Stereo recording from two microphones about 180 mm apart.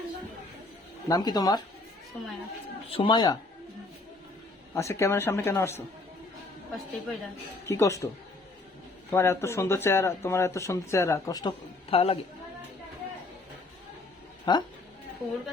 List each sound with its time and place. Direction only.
1.0 s speech: 20° left (ahead or behind)
2.9 s speech: 25° left (ahead or behind)
4.7 s speech: 15° left (ahead or behind)
7.7 s speech: 15° left (ahead or behind)
11.9 s a woman's voice: 30° left (ahead or behind)
14.5 s speech: 25° left (ahead or behind)